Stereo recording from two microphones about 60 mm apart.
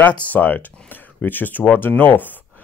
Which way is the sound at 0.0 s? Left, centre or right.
Left.